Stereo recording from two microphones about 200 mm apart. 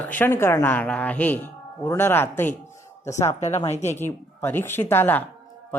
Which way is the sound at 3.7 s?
35° left (ahead or behind).